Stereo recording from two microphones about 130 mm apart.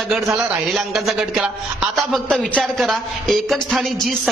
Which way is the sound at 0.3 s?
5° right (ahead or behind).